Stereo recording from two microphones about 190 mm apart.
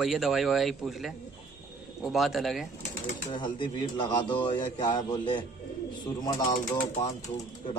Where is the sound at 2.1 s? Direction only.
Centre (ahead or behind).